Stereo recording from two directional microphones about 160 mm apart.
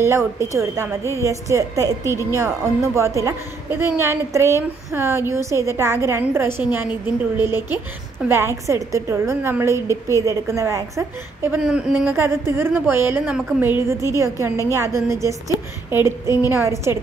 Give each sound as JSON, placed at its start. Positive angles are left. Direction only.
{"t": 0.0, "sound": "a woman's voice", "side_deg": -15}
{"t": 11.6, "sound": "a woman's voice", "side_deg": -5}